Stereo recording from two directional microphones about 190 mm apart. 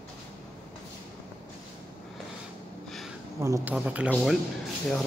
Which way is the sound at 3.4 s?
15° right (ahead or behind).